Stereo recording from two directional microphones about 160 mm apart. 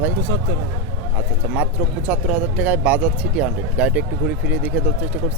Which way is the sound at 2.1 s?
10° right (ahead or behind).